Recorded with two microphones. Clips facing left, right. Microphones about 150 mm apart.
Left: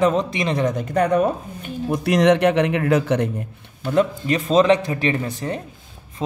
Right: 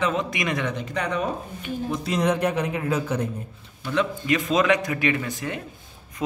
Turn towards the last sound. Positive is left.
turn(degrees=35)  # may be behind; listen again after turning